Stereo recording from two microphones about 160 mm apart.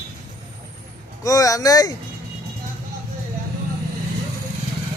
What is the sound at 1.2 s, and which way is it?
Speech, 20° left (ahead or behind).